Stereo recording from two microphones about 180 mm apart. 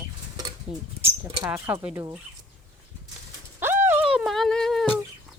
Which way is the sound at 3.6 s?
10° right (ahead or behind).